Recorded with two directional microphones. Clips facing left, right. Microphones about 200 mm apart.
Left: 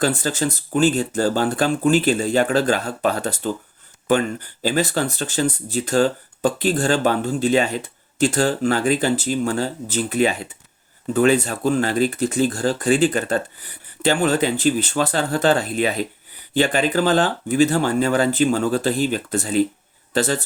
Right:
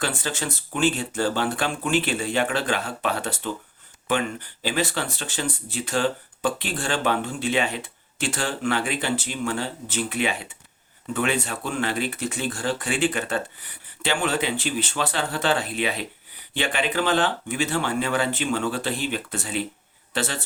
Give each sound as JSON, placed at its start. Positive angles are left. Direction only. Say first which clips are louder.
{"t": 0.0, "sound": "speech", "louder": "left 7 dB", "side_deg": 40}